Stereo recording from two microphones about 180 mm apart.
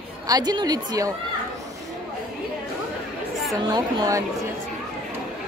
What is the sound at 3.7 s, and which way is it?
Speech, 20° right (ahead or behind).